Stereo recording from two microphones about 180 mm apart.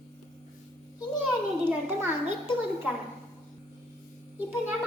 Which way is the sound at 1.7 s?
15° right (ahead or behind).